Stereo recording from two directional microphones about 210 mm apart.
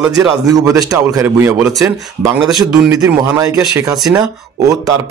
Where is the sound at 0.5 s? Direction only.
15° right (ahead or behind).